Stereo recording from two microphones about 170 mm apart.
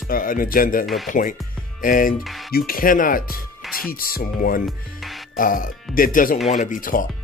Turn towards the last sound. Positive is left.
turn(degrees=55)  # may be behind; listen again after turning